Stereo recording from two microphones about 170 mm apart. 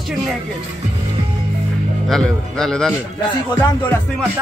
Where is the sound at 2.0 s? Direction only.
5° left (ahead or behind).